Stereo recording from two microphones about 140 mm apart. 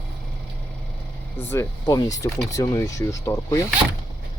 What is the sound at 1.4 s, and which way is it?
Speech, 20° left (ahead or behind).